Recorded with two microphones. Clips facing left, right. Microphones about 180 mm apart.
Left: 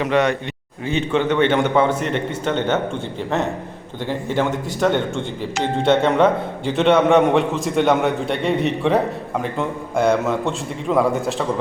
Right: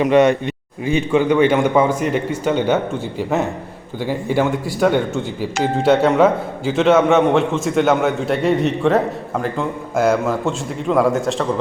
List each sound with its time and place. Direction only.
0.0 s a man's voice: 20° right (ahead or behind); by 11.4 s centre (ahead or behind)